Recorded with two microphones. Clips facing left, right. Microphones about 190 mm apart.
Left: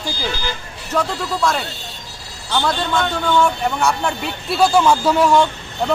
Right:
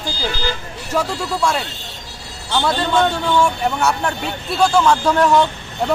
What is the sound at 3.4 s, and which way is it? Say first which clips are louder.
Speech: even; 5° right (ahead or behind).